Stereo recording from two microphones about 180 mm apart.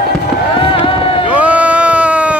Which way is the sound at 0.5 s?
30° left (ahead or behind).